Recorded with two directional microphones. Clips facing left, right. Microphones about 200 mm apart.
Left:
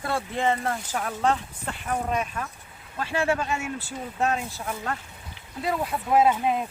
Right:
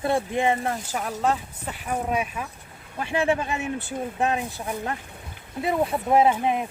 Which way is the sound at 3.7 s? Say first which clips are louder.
Right 4 dB; 55° right (ahead or behind).